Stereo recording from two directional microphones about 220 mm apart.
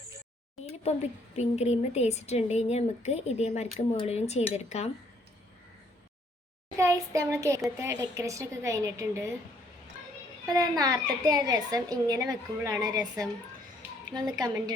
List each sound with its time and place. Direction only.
1.4 s a woman's voice: 30° left (ahead or behind)
6.7 s a woman's voice: 15° right (ahead or behind)
10.4 s a woman's voice: 15° right (ahead or behind)